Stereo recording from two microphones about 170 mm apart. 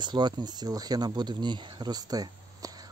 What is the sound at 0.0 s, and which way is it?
Speech, 25° right (ahead or behind).